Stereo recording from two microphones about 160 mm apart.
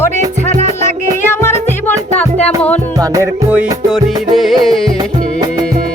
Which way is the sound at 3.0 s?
20° right (ahead or behind).